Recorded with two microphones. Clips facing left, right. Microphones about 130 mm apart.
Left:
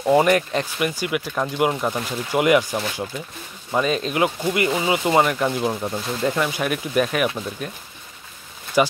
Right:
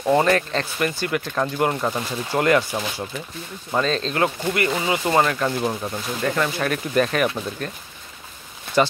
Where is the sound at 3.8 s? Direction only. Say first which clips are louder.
Left 1 dB; 15° left (ahead or behind).